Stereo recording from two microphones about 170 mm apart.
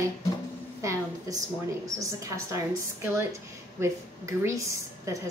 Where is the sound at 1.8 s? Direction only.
20° right (ahead or behind).